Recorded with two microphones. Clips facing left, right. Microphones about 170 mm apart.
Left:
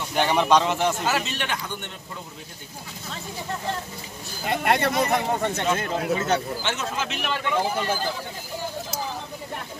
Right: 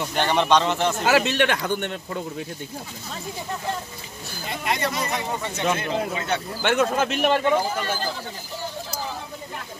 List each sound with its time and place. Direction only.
0.1 s speech: 10° left (ahead or behind)
1.0 s speech: 70° right (ahead or behind)
4.5 s speech: 60° left (ahead or behind); by 6.4 s 40° left (ahead or behind)
6.6 s speech: 60° right (ahead or behind)